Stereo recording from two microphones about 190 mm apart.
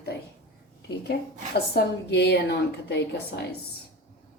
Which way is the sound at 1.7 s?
60° left (ahead or behind).